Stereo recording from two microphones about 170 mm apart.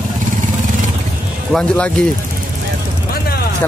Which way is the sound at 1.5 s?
5° left (ahead or behind).